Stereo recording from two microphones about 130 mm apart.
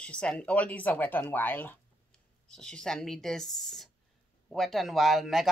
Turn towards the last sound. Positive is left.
turn(degrees=0)  # may be behind; listen again after turning